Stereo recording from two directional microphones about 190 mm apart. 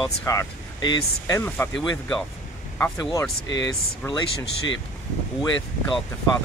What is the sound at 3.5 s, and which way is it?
Speech, 75° left (ahead or behind).